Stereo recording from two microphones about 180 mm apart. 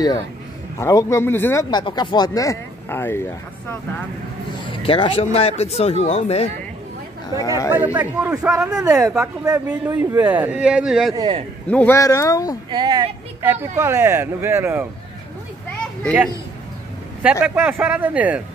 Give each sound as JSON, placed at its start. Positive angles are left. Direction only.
{"t": 0.7, "sound": "speech", "side_deg": 15}
{"t": 4.6, "sound": "speech", "side_deg": 30}
{"t": 7.3, "sound": "speech", "side_deg": 20}
{"t": 7.7, "sound": "speech", "side_deg": -10}
{"t": 8.6, "sound": "speech", "side_deg": -5}
{"t": 11.1, "sound": "a woman's voice", "side_deg": -25}
{"t": 11.7, "sound": "speech", "side_deg": 10}
{"t": 12.7, "sound": "a woman's voice", "side_deg": -25}
{"t": 13.4, "sound": "speech", "side_deg": -10}
{"t": 17.2, "sound": "speech", "side_deg": -10}